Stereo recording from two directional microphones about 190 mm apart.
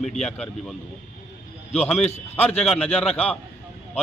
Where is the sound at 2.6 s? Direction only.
5° left (ahead or behind).